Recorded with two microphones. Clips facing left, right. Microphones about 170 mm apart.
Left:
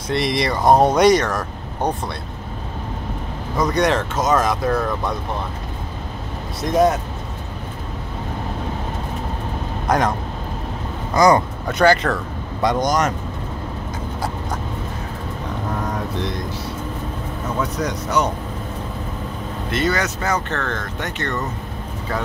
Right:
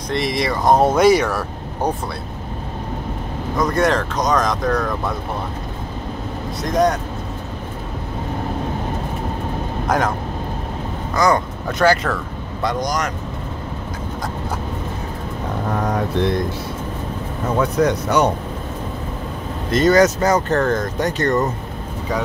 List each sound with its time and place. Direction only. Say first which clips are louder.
0.1 s speech: even; centre (ahead or behind)
3.5 s speech: right 1 dB; centre (ahead or behind)
6.6 s speech: left 1 dB; 5° left (ahead or behind)
9.8 s speech: left 1 dB; centre (ahead or behind)
11.1 s speech: left 3 dB; 15° left (ahead or behind)
11.8 s speech: left 1 dB; centre (ahead or behind)
12.6 s speech: left 3 dB; 25° left (ahead or behind)
17.8 s speech: right 4 dB; 65° right (ahead or behind)
19.7 s speech: right 8 dB; 40° right (ahead or behind)